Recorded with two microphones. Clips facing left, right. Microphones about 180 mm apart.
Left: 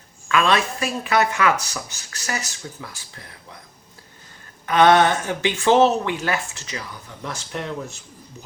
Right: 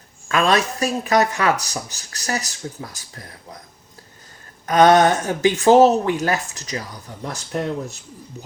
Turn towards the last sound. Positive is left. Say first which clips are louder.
# right 5 dB
turn(degrees=-35)  # may be behind; listen again after turning